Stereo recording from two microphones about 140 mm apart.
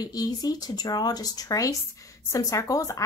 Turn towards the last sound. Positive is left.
turn(degrees=25)  # may be behind; listen again after turning